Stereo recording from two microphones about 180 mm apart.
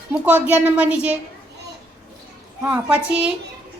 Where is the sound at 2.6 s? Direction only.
10° right (ahead or behind).